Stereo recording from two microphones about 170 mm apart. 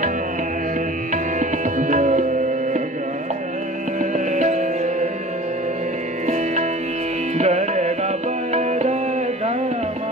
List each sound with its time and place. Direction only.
1.1 s music: 50° right (ahead or behind)
4.0 s music: 45° right (ahead or behind)
7.3 s music: 40° right (ahead or behind)